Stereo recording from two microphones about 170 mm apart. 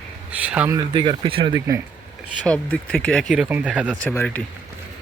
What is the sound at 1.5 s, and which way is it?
Speech, 15° right (ahead or behind).